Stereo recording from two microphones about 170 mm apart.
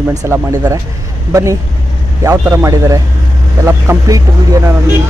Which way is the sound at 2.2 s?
20° right (ahead or behind).